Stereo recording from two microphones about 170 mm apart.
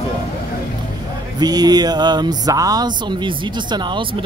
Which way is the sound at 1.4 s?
25° right (ahead or behind).